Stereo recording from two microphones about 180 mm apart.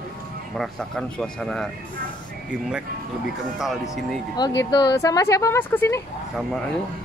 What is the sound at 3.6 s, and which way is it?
Speech, centre (ahead or behind).